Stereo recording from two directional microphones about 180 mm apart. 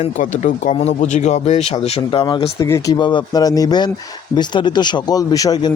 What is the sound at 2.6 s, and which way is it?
A man's voice, 20° left (ahead or behind).